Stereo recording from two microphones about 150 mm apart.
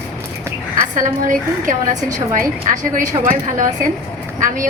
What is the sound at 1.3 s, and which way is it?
A woman's voice, 60° right (ahead or behind).